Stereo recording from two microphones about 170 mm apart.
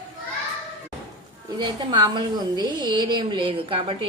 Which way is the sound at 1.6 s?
25° right (ahead or behind).